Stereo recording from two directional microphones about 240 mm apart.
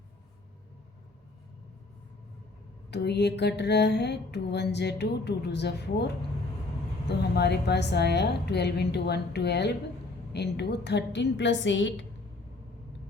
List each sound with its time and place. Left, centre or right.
2.9 s mantra: left
7.3 s mantra: left